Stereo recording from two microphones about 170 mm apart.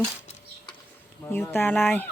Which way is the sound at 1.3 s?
15° left (ahead or behind).